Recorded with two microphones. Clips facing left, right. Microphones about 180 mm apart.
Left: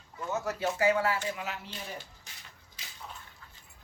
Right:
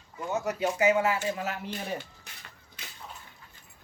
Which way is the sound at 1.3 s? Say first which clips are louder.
Right 5 dB; 50° right (ahead or behind).